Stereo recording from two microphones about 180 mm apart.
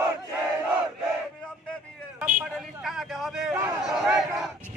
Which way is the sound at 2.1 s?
5° right (ahead or behind).